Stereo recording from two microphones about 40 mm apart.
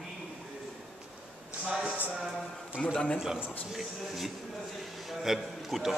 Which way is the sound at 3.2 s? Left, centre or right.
Centre.